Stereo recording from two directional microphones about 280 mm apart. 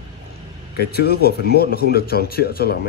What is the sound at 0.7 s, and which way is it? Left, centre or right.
Speech, left.